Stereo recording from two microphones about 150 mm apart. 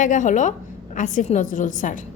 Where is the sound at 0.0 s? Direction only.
55° left (ahead or behind).